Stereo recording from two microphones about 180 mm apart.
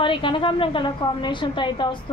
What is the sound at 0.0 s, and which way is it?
A woman's voice, 25° left (ahead or behind).